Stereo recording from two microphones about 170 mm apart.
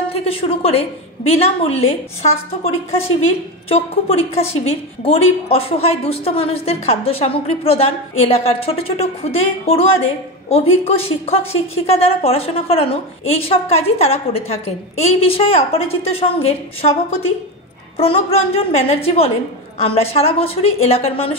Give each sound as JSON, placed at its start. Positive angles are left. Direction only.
{"t": 0.1, "sound": "a woman's voice", "side_deg": 35}
{"t": 3.2, "sound": "a woman's voice", "side_deg": 35}
{"t": 17.9, "sound": "a woman's voice", "side_deg": 35}